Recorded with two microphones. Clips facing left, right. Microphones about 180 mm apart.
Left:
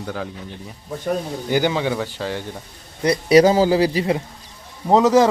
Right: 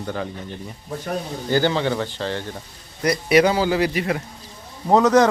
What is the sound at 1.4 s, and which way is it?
A man's voice, 15° left (ahead or behind).